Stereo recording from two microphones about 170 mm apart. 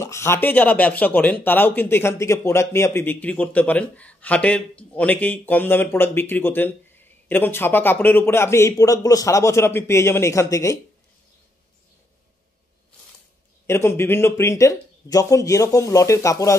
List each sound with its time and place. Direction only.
0.0 s speech: 15° left (ahead or behind)
13.7 s speech: 15° left (ahead or behind)